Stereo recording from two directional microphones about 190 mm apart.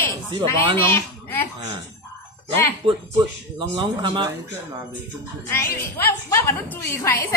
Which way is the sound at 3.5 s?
25° right (ahead or behind).